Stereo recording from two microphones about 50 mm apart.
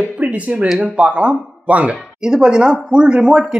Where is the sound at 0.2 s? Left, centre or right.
Right.